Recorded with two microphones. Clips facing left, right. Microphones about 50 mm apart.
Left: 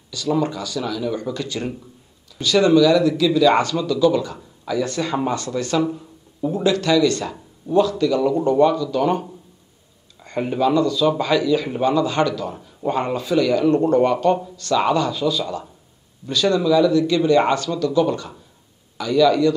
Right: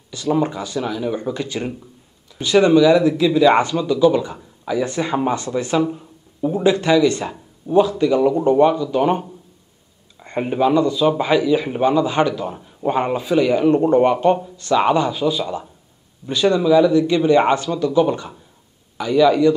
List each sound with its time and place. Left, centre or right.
0.1 s speech: right
10.2 s speech: right